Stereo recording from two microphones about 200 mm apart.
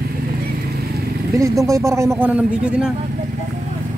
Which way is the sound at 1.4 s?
15° right (ahead or behind).